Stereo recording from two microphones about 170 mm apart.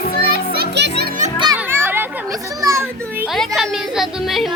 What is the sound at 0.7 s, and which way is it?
Music, 80° right.